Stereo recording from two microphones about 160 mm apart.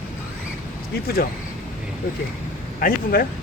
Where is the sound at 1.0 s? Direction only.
70° left (ahead or behind).